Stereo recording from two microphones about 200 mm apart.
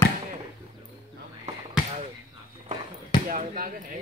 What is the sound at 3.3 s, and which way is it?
Speech, 45° right (ahead or behind).